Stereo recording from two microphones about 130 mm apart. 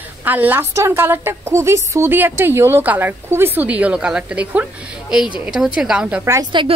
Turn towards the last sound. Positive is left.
turn(degrees=-40)  # may be behind; listen again after turning